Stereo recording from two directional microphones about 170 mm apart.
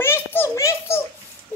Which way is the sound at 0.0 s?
15° left (ahead or behind).